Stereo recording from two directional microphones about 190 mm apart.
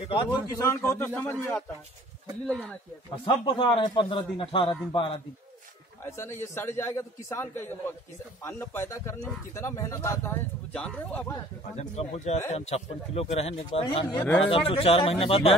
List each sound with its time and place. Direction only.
0.1 s speech: 20° left (ahead or behind)
3.3 s a man's voice: 25° left (ahead or behind)
6.0 s speech: 15° left (ahead or behind)
11.7 s a man's voice: 35° left (ahead or behind)
14.0 s speech: 10° left (ahead or behind)
14.5 s a man's voice: 30° left (ahead or behind)